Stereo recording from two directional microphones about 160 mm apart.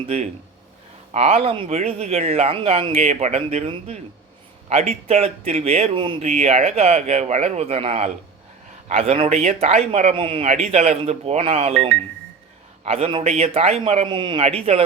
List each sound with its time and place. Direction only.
1.1 s speech: 45° right (ahead or behind)
6.2 s speech: 45° right (ahead or behind)
10.2 s speech: 35° right (ahead or behind)
12.8 s speech: 40° right (ahead or behind)